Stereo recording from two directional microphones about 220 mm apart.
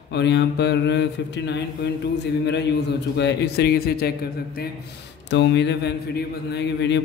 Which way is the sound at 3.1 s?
50° left (ahead or behind).